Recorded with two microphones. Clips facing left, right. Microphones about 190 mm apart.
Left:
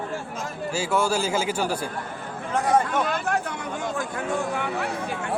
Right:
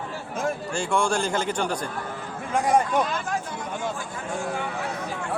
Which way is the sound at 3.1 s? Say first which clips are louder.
Left 3 dB; 65° left (ahead or behind).